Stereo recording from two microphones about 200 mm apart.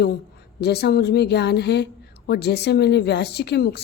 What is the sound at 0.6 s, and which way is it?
A woman's voice, 55° left (ahead or behind).